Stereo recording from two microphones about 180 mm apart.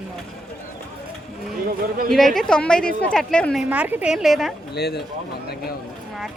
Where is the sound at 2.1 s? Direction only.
Centre (ahead or behind).